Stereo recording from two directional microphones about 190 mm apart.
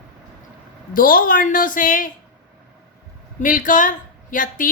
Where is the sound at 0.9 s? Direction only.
50° left (ahead or behind).